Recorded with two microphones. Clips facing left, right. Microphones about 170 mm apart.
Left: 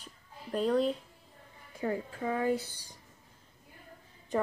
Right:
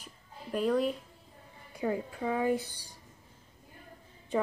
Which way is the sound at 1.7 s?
15° right (ahead or behind).